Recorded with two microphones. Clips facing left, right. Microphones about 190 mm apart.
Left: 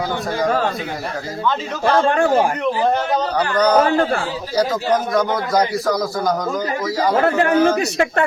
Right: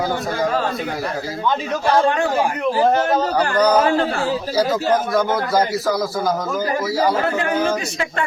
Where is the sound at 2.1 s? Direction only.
45° left (ahead or behind).